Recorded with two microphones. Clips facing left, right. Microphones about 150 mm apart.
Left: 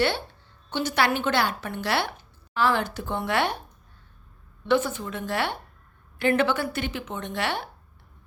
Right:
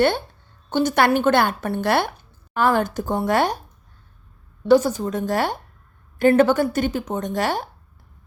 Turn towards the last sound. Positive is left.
turn(degrees=-40)  # may be behind; listen again after turning